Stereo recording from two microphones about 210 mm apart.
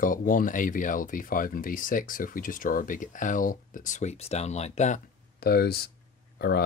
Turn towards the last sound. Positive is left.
turn(degrees=50)  # may be behind; listen again after turning